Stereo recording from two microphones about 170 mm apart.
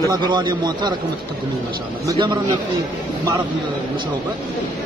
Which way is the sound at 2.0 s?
25° right (ahead or behind).